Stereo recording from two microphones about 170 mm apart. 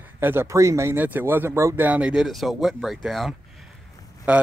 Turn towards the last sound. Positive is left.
turn(degrees=-5)  # may be behind; listen again after turning